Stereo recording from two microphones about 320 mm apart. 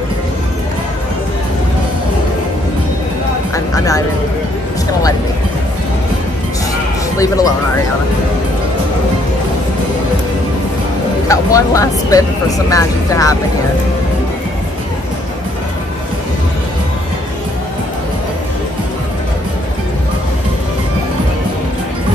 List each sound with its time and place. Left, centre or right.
3.5 s music: centre
7.2 s speech: centre
11.2 s speech: centre